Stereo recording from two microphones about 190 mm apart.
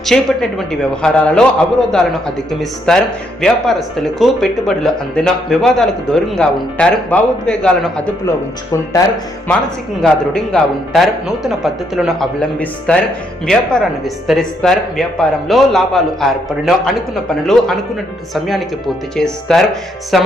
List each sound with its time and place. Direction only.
0.0 s speech: centre (ahead or behind)
9.0 s speech: 15° left (ahead or behind)
10.0 s speech: centre (ahead or behind)